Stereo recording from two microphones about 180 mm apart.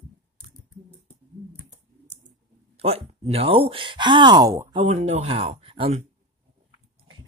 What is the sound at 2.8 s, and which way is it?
Speech, 35° right (ahead or behind).